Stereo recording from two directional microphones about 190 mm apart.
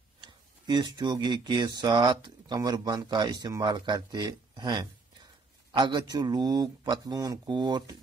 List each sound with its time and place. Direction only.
0.2 s speech: 20° right (ahead or behind)